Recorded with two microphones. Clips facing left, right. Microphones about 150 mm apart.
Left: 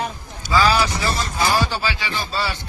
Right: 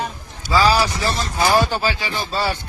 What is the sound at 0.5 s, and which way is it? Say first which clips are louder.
Speech: right 1 dB; 35° right (ahead or behind).